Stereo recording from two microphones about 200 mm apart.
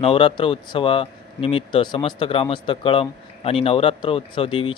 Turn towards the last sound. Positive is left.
turn(degrees=25)  # may be behind; listen again after turning